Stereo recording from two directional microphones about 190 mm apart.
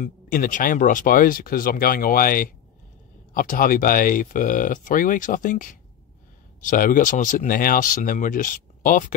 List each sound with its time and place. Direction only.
0.0 s speech: 45° left (ahead or behind)